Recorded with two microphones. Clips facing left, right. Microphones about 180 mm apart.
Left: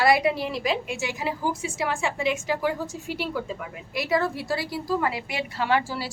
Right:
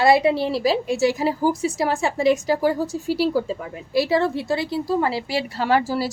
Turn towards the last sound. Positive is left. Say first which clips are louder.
# right 5 dB
turn(degrees=-40)  # may be behind; listen again after turning